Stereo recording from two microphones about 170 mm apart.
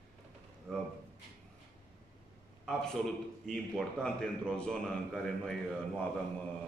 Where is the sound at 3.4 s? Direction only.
5° left (ahead or behind).